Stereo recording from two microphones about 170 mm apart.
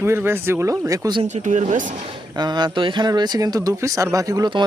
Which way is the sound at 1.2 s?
45° right (ahead or behind).